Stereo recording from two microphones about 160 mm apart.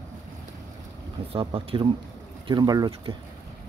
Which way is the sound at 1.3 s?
35° right (ahead or behind).